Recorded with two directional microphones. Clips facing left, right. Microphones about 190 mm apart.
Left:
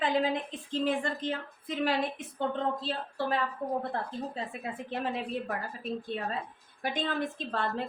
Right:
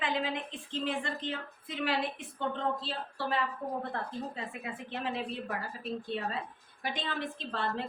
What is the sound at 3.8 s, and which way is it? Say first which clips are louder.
Speech: left 2 dB; 35° left (ahead or behind).